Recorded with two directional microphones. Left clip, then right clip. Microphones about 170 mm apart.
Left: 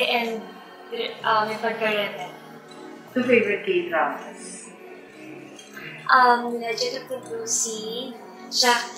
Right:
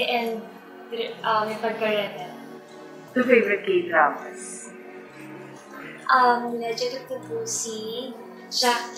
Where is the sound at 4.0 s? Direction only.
15° right (ahead or behind).